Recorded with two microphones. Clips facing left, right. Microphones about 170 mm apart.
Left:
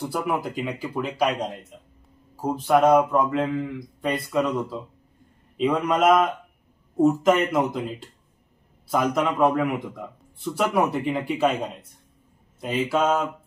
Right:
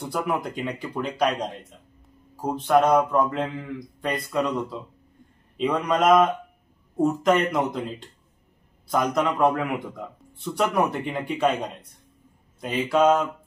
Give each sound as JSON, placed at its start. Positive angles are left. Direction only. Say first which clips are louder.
{"t": 0.1, "sound": "a man's voice", "louder": "right 2 dB", "side_deg": 0}
{"t": 2.4, "sound": "a man's voice", "louder": "left 1 dB", "side_deg": 5}
{"t": 8.8, "sound": "a man's voice", "louder": "even", "side_deg": 5}
{"t": 12.8, "sound": "a man's voice", "louder": "right 3 dB", "side_deg": 5}